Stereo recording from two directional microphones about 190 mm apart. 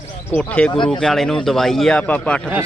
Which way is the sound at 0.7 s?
25° left (ahead or behind).